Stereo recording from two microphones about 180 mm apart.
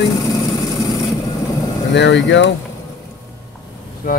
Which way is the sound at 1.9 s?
80° left.